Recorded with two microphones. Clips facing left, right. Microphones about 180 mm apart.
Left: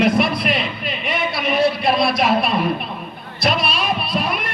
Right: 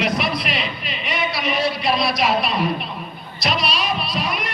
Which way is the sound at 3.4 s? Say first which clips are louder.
Left 3 dB; 50° left (ahead or behind).